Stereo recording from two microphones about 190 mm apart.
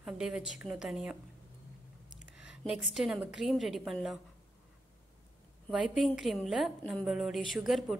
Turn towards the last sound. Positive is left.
turn(degrees=0)  # may be behind; listen again after turning